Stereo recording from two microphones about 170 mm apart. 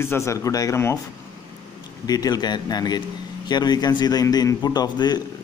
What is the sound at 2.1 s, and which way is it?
A man's voice, 20° left (ahead or behind).